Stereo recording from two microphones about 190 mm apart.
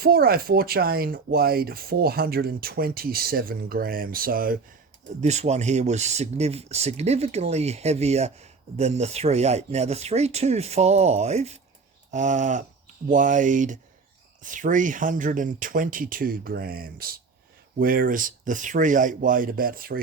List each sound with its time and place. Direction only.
0.0 s speech: 50° right (ahead or behind)
5.2 s speech: 35° right (ahead or behind)